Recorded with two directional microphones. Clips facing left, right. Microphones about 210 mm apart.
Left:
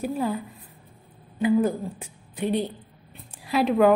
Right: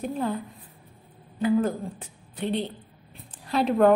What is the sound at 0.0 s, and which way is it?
Speech, 5° left (ahead or behind).